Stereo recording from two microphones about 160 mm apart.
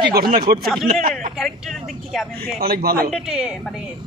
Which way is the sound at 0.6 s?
Centre (ahead or behind).